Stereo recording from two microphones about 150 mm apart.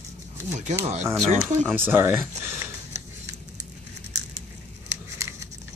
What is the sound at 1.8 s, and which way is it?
Speech, 15° right (ahead or behind).